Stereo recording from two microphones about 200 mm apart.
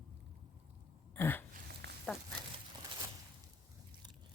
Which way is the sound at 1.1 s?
10° left (ahead or behind).